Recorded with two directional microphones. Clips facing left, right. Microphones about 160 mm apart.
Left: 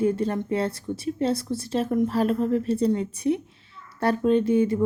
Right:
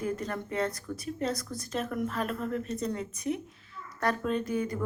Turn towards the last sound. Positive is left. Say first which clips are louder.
# left 10 dB
turn(degrees=25)  # may be behind; listen again after turning